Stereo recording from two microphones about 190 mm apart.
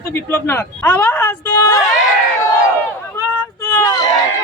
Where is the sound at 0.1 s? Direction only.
15° left (ahead or behind).